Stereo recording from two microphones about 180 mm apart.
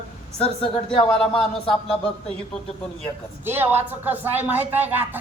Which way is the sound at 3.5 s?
10° right (ahead or behind).